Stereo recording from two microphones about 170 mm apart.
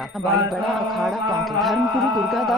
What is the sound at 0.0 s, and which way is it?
Mantra, centre (ahead or behind).